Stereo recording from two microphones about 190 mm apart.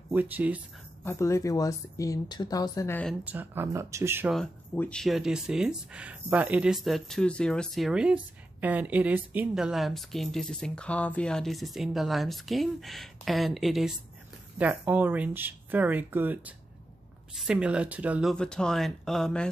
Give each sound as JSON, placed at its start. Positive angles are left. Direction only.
{"t": 0.1, "sound": "speech", "side_deg": -10}
{"t": 1.0, "sound": "speech", "side_deg": 15}
{"t": 3.3, "sound": "speech", "side_deg": -10}
{"t": 4.3, "sound": "speech", "side_deg": 5}
{"t": 18.3, "sound": "speech", "side_deg": 5}